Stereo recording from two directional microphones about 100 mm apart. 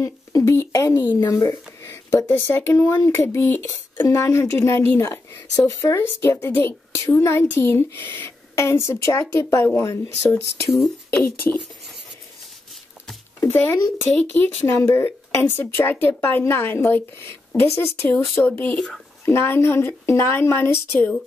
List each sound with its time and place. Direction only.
0.0 s speech: 30° left (ahead or behind)
13.4 s speech: 25° left (ahead or behind)
14.1 s speech: 15° left (ahead or behind)
14.7 s speech: 25° left (ahead or behind)